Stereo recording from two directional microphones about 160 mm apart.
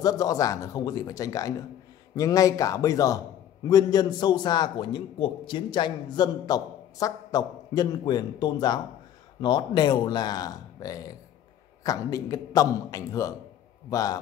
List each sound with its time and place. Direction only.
0.0 s a man's voice: 25° left (ahead or behind)